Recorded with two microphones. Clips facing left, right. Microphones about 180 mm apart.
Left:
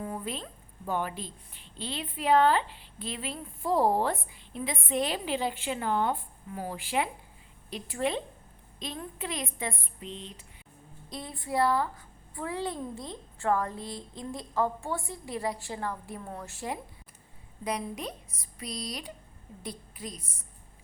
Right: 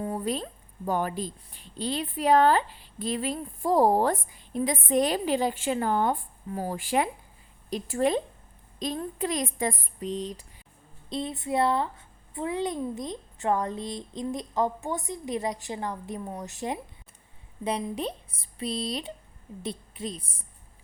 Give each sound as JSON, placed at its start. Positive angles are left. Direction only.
{"t": 0.0, "sound": "a sound", "side_deg": -35}
{"t": 0.9, "sound": "a woman's voice", "side_deg": -40}
{"t": 11.1, "sound": "a woman's voice", "side_deg": -25}